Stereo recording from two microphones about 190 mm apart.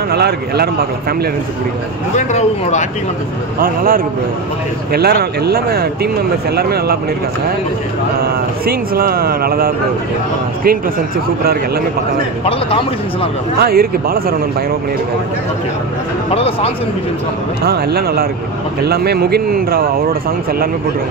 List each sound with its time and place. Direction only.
0.1 s speech: 60° right (ahead or behind)
2.1 s speech: 40° left (ahead or behind)
3.5 s speech: 50° right (ahead or behind)
8.2 s speech: 50° right (ahead or behind)
12.4 s a man's voice: 30° left (ahead or behind)
13.6 s speech: 55° right (ahead or behind)
16.3 s speech: 30° left (ahead or behind)
17.6 s speech: 55° right (ahead or behind)